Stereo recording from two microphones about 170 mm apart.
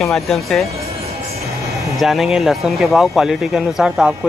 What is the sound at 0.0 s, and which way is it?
Speech, centre (ahead or behind).